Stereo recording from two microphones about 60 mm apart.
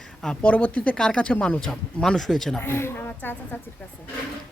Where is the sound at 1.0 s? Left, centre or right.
Centre.